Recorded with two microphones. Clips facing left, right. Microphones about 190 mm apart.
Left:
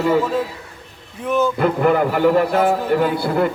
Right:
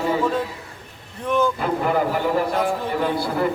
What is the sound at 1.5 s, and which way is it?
Speech, 60° left (ahead or behind).